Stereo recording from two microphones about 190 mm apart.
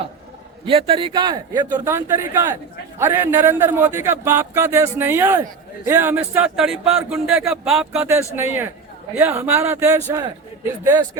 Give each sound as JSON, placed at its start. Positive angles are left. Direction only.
{"t": 0.6, "sound": "speech", "side_deg": -30}
{"t": 8.0, "sound": "speech", "side_deg": -15}